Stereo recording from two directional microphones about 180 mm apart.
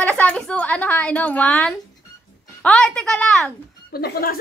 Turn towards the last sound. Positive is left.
turn(degrees=55)  # may be behind; listen again after turning